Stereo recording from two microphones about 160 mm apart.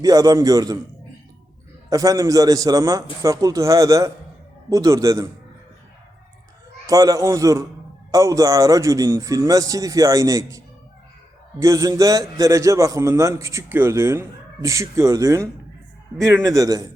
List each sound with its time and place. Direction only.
0.0 s a man's voice: 20° right (ahead or behind)
1.9 s a man's voice: 20° right (ahead or behind)
6.8 s a man's voice: 20° right (ahead or behind)
11.6 s a man's voice: 20° right (ahead or behind)